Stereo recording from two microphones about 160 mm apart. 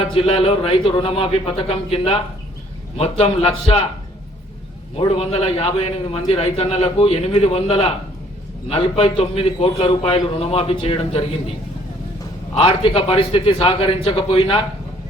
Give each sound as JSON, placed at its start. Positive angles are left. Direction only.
{"t": 0.0, "sound": "a man's voice", "side_deg": 35}
{"t": 4.9, "sound": "a man's voice", "side_deg": 40}
{"t": 12.5, "sound": "a man's voice", "side_deg": 35}